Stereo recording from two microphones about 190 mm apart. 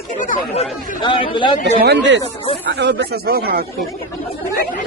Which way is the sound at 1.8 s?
70° right (ahead or behind).